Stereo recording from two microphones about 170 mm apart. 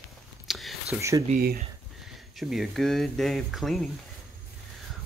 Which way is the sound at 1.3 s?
65° right (ahead or behind).